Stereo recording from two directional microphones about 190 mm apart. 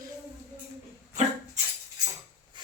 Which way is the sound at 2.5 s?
25° right (ahead or behind).